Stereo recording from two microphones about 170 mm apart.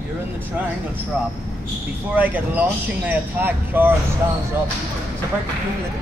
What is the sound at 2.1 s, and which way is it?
Speech, 10° right (ahead or behind).